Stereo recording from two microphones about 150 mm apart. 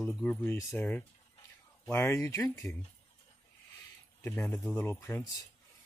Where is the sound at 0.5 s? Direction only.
20° left (ahead or behind).